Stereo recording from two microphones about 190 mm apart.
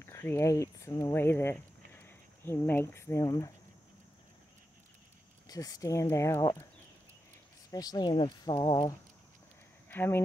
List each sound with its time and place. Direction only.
0.0 s speech: 15° left (ahead or behind)
5.5 s speech: 20° left (ahead or behind)
7.7 s speech: 20° left (ahead or behind)
9.8 s speech: 10° left (ahead or behind)